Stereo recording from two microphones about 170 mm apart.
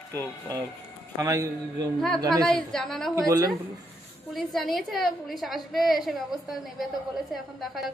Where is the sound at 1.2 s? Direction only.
20° right (ahead or behind).